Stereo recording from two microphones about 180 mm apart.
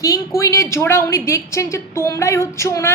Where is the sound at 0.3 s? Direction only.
15° left (ahead or behind).